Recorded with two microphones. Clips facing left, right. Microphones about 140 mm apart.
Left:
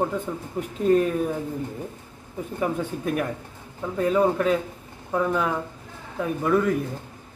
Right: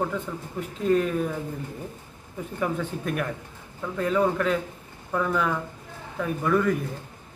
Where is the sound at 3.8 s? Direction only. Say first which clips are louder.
Left 3 dB; 20° left (ahead or behind).